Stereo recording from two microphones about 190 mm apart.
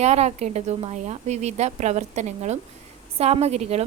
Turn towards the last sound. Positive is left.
turn(degrees=-35)  # may be behind; listen again after turning